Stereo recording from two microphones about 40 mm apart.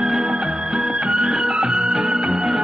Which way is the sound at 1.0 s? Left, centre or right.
Centre.